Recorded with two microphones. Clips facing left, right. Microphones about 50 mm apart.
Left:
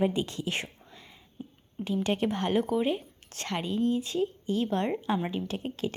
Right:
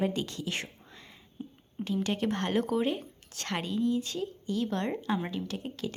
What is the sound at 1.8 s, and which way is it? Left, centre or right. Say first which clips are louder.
Speech: left 2 dB; left.